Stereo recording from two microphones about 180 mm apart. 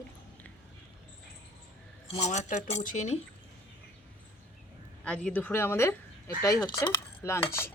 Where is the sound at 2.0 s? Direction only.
35° left (ahead or behind).